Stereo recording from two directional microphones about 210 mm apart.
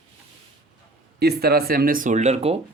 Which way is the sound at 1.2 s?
50° right (ahead or behind).